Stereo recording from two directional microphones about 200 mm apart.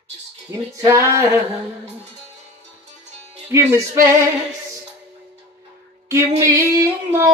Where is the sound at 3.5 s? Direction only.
15° right (ahead or behind).